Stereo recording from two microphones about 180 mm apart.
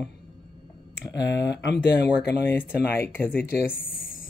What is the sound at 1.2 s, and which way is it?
Speech, 75° left (ahead or behind).